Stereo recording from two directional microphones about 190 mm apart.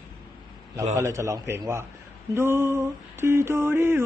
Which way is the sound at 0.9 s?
15° right (ahead or behind).